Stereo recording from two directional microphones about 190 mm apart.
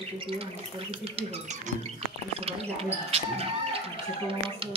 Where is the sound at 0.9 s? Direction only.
30° right (ahead or behind).